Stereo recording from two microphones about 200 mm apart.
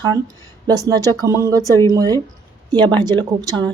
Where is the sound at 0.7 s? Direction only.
20° right (ahead or behind).